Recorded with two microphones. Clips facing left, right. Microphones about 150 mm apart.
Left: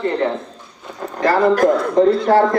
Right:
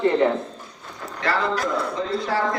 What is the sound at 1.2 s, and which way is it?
A man's voice, 45° left (ahead or behind).